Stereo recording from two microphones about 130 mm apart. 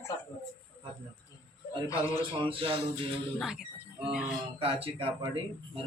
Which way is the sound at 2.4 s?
45° right (ahead or behind).